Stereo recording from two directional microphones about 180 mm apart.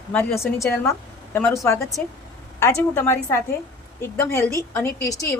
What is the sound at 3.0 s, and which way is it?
A woman's voice, 15° left (ahead or behind).